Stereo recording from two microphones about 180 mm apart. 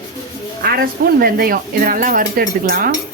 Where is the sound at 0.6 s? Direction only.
60° right (ahead or behind).